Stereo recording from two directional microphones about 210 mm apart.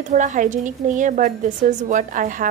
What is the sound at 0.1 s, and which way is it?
A woman's voice, 35° right (ahead or behind).